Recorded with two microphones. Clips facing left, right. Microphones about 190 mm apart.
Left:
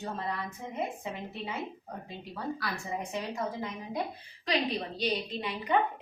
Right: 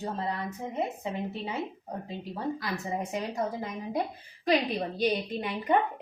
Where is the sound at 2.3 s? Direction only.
25° right (ahead or behind).